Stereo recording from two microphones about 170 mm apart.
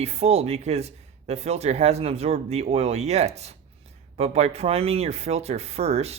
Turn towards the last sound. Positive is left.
turn(degrees=-40)  # may be behind; listen again after turning